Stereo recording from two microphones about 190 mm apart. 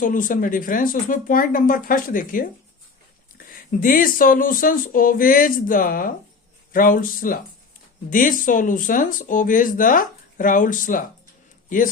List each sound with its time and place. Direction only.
0.0 s speech: 45° left (ahead or behind)